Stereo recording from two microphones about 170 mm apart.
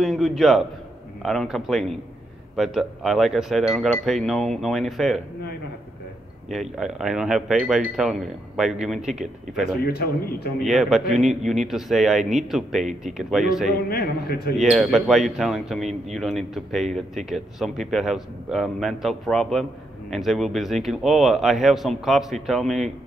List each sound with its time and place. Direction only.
0.0 s speech: centre (ahead or behind)
6.5 s speech: centre (ahead or behind)
9.8 s a man's voice: 65° left (ahead or behind)
10.6 s speech: centre (ahead or behind)
13.8 s a man's voice: 65° left (ahead or behind)
14.7 s speech: centre (ahead or behind)